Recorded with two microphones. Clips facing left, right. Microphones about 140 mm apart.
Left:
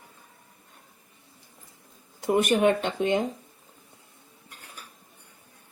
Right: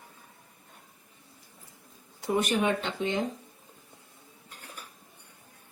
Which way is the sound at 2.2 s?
50° left (ahead or behind).